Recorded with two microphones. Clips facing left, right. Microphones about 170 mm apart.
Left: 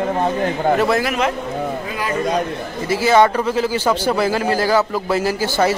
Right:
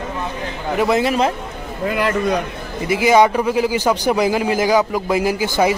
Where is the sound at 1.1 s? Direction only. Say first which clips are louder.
Right 2 dB; 30° right (ahead or behind).